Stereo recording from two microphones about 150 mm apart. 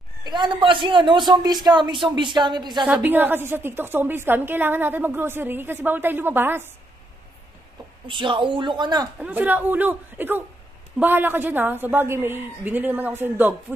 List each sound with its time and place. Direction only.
0.2 s a man's voice: 30° right (ahead or behind)
2.9 s a woman's voice: 10° right (ahead or behind)
8.1 s a man's voice: 35° right (ahead or behind)
9.2 s a woman's voice: 10° right (ahead or behind)